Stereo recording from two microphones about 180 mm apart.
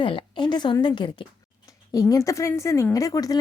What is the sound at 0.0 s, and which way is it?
A woman's voice, 30° left (ahead or behind).